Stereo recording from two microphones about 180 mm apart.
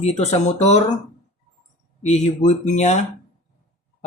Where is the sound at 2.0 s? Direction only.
40° left (ahead or behind).